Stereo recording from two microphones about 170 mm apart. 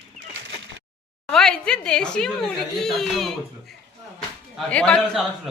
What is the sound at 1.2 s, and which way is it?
Speech, 5° left (ahead or behind).